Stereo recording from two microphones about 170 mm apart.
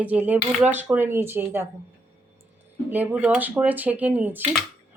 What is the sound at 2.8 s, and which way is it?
Speech, 10° right (ahead or behind).